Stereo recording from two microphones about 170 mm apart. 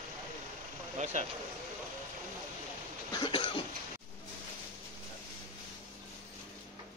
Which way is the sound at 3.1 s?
30° left (ahead or behind).